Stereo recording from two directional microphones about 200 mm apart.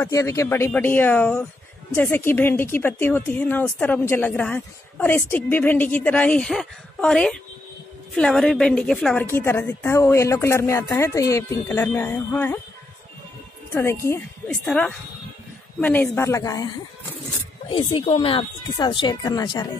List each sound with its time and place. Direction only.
0.0 s a woman's voice: 15° left (ahead or behind)
13.7 s a woman's voice: 15° left (ahead or behind)
17.6 s speech: 25° left (ahead or behind)